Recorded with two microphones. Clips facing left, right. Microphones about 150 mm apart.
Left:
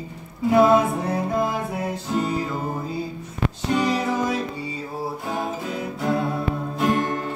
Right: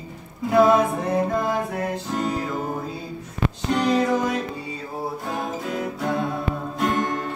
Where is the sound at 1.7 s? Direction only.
5° left (ahead or behind).